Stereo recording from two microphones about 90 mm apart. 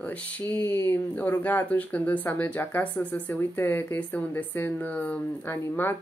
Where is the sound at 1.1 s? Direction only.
20° left (ahead or behind).